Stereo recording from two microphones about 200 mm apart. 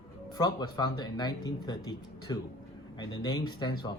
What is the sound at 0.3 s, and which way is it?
Speech, 20° left (ahead or behind).